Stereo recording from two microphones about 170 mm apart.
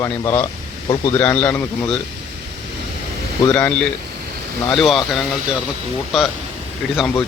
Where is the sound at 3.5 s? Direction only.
10° left (ahead or behind).